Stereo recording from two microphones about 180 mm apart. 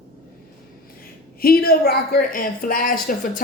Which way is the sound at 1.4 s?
55° left (ahead or behind).